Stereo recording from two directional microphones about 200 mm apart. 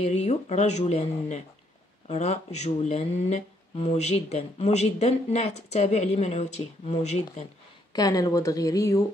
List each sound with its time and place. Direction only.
0.0 s speech: 35° left (ahead or behind)
7.9 s speech: 20° left (ahead or behind)